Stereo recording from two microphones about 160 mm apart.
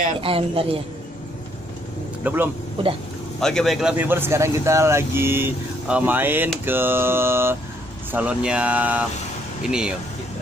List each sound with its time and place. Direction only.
0.2 s a man's voice: 35° right (ahead or behind)
2.2 s speech: 10° right (ahead or behind)
2.8 s a man's voice: 35° right (ahead or behind)
3.3 s speech: 5° left (ahead or behind)